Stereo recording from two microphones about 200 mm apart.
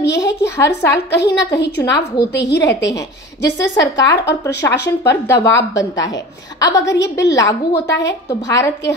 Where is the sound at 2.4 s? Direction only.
55° left (ahead or behind).